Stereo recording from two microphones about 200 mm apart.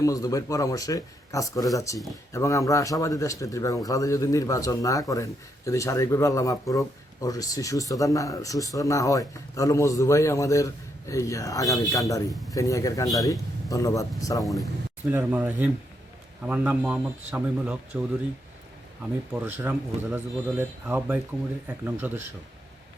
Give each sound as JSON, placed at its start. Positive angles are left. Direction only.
{"t": 0.0, "sound": "speech", "side_deg": 15}
{"t": 15.1, "sound": "speech", "side_deg": -10}
{"t": 19.3, "sound": "speech", "side_deg": -10}